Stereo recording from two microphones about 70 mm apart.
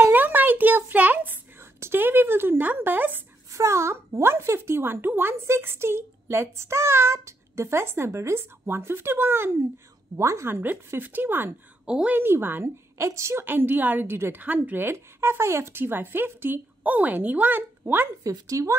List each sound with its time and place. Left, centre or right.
0.1 s a sound: right
3.5 s a child's voice: right
10.1 s a woman's voice: right
10.5 s speech: right
11.8 s a woman's voice: centre
12.2 s a child's voice: right
12.9 s a woman's voice: right
13.5 s a child's voice: right
18.5 s a woman's voice: right